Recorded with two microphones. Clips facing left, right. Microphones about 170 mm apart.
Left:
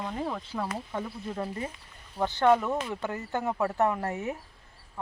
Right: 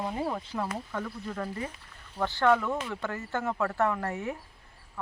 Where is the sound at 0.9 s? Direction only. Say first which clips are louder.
Left 1 dB; 20° left (ahead or behind).